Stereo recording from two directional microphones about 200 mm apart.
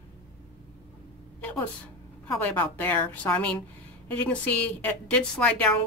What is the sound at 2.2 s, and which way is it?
A woman's voice, 10° left (ahead or behind).